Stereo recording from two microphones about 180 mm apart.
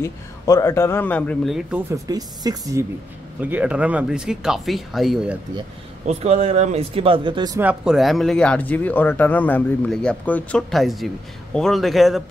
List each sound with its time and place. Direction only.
0.0 s speech: 15° left (ahead or behind); by 1.8 s centre (ahead or behind)
1.9 s speech: 20° right (ahead or behind)
3.3 s speech: 10° right (ahead or behind)
6.0 s speech: 35° right (ahead or behind)
7.6 s speech: 5° right (ahead or behind)